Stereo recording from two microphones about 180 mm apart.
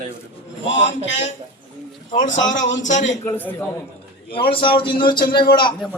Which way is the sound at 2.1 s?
45° left (ahead or behind).